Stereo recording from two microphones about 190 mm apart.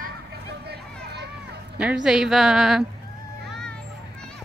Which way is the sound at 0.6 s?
60° right (ahead or behind).